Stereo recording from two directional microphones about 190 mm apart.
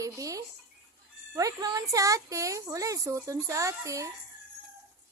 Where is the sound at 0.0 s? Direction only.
15° right (ahead or behind).